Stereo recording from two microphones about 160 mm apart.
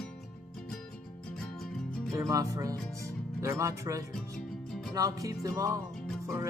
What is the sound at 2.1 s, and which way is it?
Speech, 20° right (ahead or behind).